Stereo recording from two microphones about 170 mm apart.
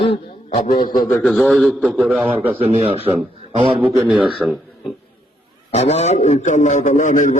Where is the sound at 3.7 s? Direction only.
10° right (ahead or behind).